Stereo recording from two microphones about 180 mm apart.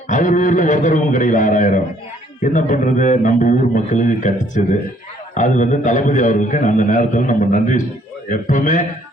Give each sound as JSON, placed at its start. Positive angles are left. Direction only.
{"t": 0.1, "sound": "a man's voice", "side_deg": 45}